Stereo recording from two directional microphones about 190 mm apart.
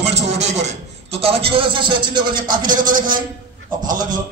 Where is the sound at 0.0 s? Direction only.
35° right (ahead or behind).